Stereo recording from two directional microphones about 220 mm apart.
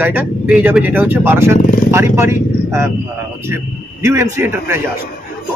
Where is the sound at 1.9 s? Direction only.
10° right (ahead or behind).